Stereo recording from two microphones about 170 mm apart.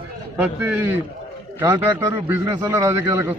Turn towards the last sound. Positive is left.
turn(degrees=-15)  # may be behind; listen again after turning